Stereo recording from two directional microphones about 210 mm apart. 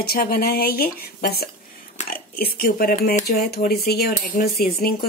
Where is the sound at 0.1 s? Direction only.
45° left (ahead or behind).